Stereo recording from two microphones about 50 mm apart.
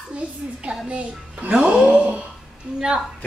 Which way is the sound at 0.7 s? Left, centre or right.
Right.